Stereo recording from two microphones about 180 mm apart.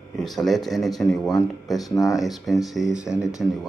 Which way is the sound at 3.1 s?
15° left (ahead or behind).